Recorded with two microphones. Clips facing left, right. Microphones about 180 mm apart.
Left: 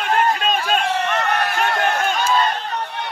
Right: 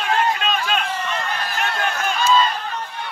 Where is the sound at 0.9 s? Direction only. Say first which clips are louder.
Left 5 dB; 70° left (ahead or behind).